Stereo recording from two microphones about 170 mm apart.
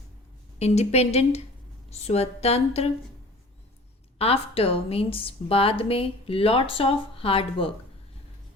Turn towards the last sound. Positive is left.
turn(degrees=35)  # may be behind; listen again after turning